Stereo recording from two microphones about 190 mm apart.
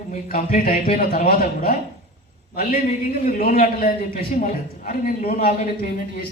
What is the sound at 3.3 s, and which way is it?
A man's voice, 50° left (ahead or behind).